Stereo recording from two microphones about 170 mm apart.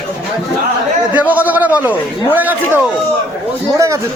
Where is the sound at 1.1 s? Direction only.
10° right (ahead or behind).